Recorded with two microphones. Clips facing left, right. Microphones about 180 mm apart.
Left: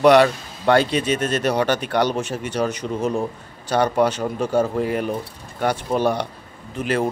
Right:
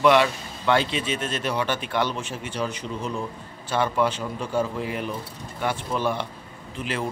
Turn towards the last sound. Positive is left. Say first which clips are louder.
# left 7 dB
turn(degrees=45)  # may be behind; listen again after turning